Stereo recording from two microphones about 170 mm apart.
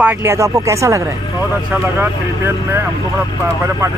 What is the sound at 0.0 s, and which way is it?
Speech, 15° right (ahead or behind).